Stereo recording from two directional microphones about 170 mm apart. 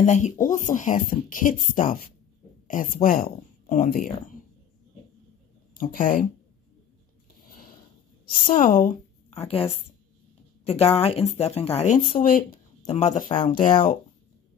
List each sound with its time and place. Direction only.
0.0 s speech: 45° left (ahead or behind)
2.7 s speech: 55° left (ahead or behind)
5.8 s speech: 55° left (ahead or behind)
8.3 s a woman's voice: 55° left (ahead or behind)
10.6 s a sound: 35° left (ahead or behind)
11.0 s speech: 35° left (ahead or behind); by 12.5 s 55° left (ahead or behind)
12.9 s speech: 45° left (ahead or behind)